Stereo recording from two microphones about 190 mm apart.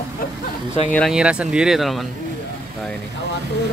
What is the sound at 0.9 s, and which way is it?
Speech, centre (ahead or behind).